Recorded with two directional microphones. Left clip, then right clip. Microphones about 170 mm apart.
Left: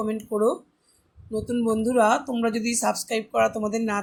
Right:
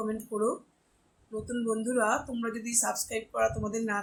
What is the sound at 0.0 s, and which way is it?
Speech, 40° left (ahead or behind).